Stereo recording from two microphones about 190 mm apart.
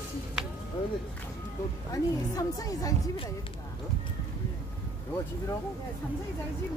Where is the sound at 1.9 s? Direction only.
20° left (ahead or behind).